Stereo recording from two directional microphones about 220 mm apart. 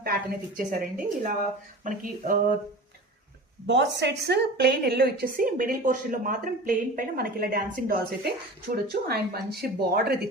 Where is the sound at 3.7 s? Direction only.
50° right (ahead or behind).